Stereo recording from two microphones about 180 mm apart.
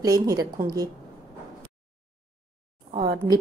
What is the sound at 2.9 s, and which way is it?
Speech, 60° right (ahead or behind).